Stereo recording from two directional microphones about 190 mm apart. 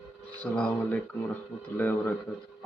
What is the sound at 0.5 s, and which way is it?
Speech, 5° left (ahead or behind).